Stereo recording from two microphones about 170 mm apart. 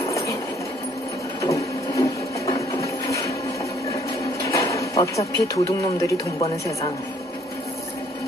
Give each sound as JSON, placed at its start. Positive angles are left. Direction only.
{"t": 1.4, "sound": "printer", "side_deg": 20}
{"t": 4.5, "sound": "speech", "side_deg": 20}